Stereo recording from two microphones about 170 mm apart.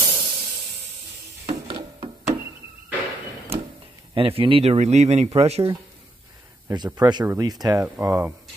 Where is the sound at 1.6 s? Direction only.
30° right (ahead or behind).